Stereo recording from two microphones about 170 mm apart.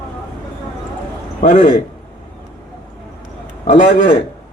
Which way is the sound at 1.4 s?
45° left (ahead or behind).